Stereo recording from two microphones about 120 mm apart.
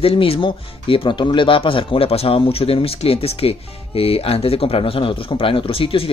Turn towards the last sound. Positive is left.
turn(degrees=50)  # may be behind; listen again after turning